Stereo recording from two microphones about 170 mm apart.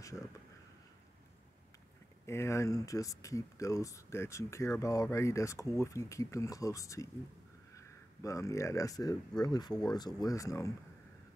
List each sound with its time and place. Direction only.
2.2 s speech: 15° left (ahead or behind)